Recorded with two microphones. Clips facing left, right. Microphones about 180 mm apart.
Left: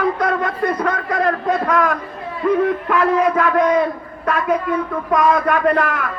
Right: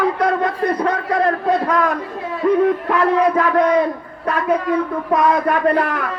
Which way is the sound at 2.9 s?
30° right (ahead or behind).